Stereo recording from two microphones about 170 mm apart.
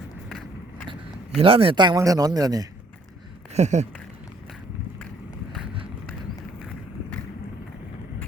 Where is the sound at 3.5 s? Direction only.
40° right (ahead or behind).